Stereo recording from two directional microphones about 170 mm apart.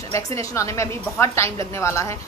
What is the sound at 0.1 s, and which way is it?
A woman's voice, 20° left (ahead or behind).